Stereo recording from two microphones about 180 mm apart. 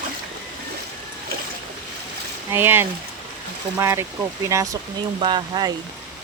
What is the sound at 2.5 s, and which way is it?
Speech, 10° right (ahead or behind).